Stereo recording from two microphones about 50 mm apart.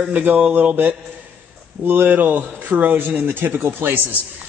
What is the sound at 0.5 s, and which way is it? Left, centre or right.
Speech, right.